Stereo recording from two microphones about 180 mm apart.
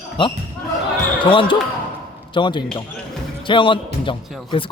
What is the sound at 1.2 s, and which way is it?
A man's voice, 30° left (ahead or behind).